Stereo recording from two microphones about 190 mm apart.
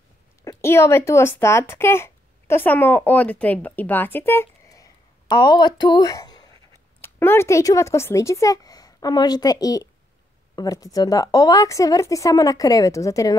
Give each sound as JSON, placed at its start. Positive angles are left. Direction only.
{"t": 0.4, "sound": "a woman's voice", "side_deg": 15}